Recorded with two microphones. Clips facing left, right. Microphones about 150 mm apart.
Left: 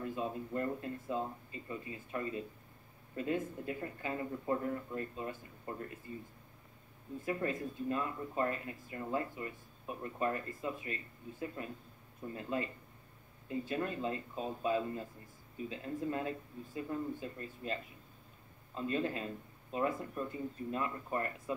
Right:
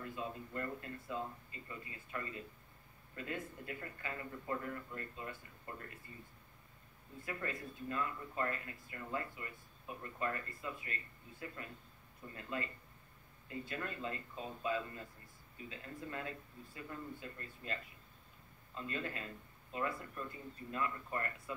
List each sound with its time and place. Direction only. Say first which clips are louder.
0.1 s speech: left 6 dB; 25° left (ahead or behind)
7.2 s speech: left 7 dB; 20° left (ahead or behind)
13.7 s speech: left 6 dB; 20° left (ahead or behind)
18.8 s speech: left 7 dB; 25° left (ahead or behind)